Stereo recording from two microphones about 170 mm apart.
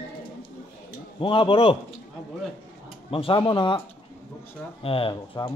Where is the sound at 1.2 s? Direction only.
30° left (ahead or behind).